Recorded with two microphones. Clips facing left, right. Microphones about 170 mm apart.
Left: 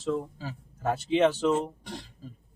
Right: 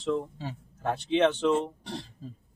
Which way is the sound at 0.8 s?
5° left (ahead or behind).